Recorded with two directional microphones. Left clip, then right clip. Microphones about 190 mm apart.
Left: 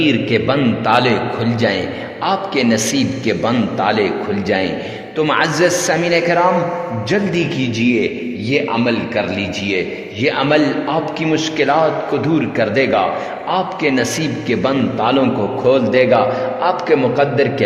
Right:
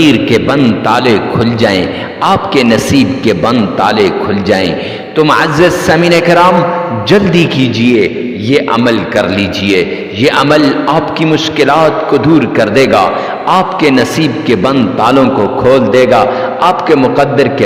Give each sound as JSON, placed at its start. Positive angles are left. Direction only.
{"t": 0.0, "sound": "a man's voice", "side_deg": -35}